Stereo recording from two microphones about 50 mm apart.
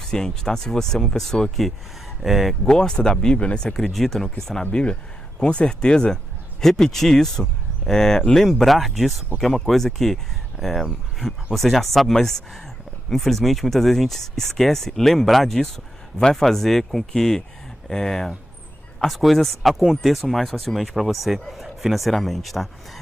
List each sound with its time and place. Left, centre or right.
0.0 s speech: centre
2.2 s speech: centre
2.6 s speech: centre
3.7 s speech: centre
8.4 s speech: centre